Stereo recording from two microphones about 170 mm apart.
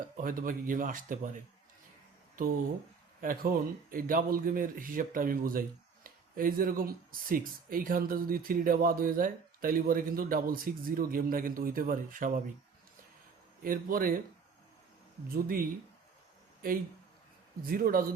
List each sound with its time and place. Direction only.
0.2 s speech: 55° right (ahead or behind)
3.2 s speech: 55° right (ahead or behind)
13.6 s speech: 55° right (ahead or behind)
15.3 s speech: 60° right (ahead or behind)
17.6 s speech: 60° right (ahead or behind)